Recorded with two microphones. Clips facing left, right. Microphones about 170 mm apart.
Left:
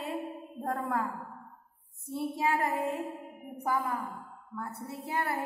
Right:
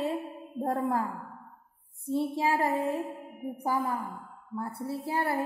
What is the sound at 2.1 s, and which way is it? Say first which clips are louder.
A woman's voice: right 3 dB; 30° right (ahead or behind).